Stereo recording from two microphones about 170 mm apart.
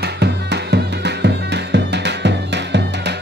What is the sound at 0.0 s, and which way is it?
Music, 80° right.